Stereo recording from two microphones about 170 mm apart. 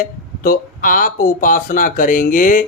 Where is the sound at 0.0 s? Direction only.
55° left (ahead or behind).